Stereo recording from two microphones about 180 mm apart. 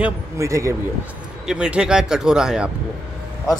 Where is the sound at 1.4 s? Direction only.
5° right (ahead or behind).